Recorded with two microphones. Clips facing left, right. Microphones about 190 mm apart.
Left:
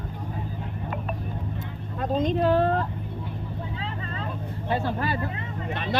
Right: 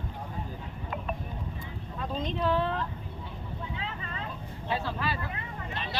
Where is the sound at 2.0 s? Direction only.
45° left (ahead or behind).